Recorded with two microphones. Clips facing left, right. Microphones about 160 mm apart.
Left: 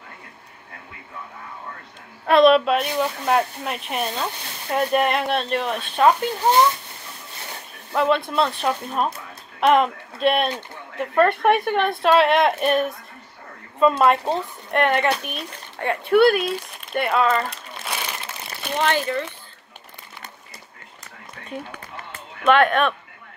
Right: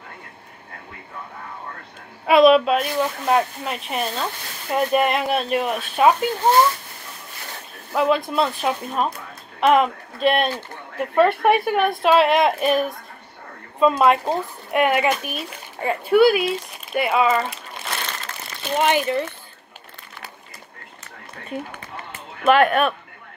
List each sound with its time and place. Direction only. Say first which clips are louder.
2.2 s speech: right 1 dB; 5° right (ahead or behind)
7.9 s speech: right 1 dB; centre (ahead or behind)
18.8 s speech: right 2 dB; 15° right (ahead or behind)
22.4 s speech: right 1 dB; 5° right (ahead or behind)